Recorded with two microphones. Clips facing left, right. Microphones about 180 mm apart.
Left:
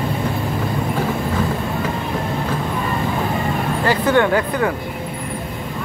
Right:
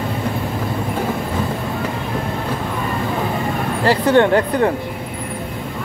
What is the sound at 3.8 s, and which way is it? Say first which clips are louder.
Speech: right 3 dB; 30° right (ahead or behind).